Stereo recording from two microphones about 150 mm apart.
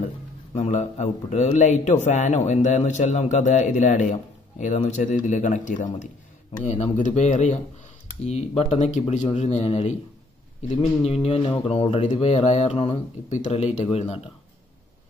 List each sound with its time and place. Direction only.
0.6 s a man's voice: 55° left (ahead or behind)
11.1 s a man's voice: 40° left (ahead or behind)